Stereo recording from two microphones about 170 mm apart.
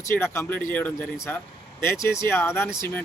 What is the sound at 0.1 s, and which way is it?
Speech, 15° left (ahead or behind).